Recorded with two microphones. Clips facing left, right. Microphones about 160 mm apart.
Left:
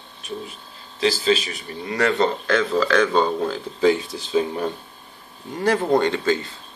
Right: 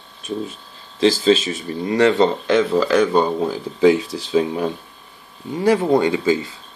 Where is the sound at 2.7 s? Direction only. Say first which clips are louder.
Even; 5° right (ahead or behind).